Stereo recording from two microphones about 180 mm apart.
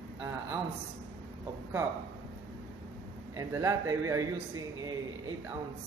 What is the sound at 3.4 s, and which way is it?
Speech, 15° right (ahead or behind).